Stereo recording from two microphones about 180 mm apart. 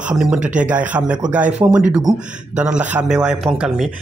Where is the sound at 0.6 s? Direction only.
10° right (ahead or behind).